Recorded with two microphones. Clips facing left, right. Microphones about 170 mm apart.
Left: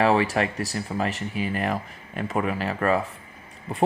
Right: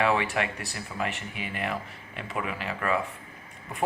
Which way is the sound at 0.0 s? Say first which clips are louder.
Left 5 dB; 35° left (ahead or behind).